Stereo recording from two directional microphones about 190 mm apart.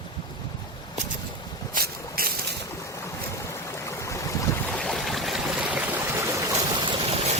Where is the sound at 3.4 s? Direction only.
15° left (ahead or behind).